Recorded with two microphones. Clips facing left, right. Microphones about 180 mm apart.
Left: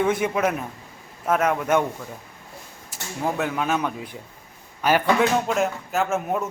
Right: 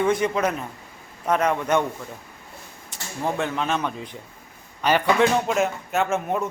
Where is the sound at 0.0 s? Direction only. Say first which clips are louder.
Even; 5° left (ahead or behind).